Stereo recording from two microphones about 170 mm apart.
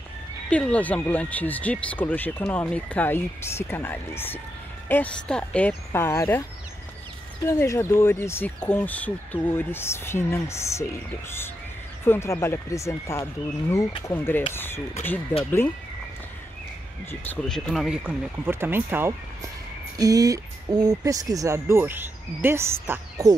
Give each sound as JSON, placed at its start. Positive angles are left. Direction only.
{"t": 0.5, "sound": "speech", "side_deg": 5}
{"t": 7.4, "sound": "speech", "side_deg": 15}
{"t": 17.1, "sound": "speech", "side_deg": 10}